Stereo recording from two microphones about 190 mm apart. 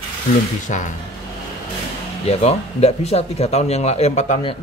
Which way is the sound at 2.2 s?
35° left (ahead or behind).